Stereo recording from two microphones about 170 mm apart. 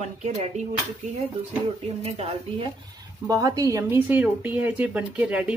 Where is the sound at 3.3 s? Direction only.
20° right (ahead or behind).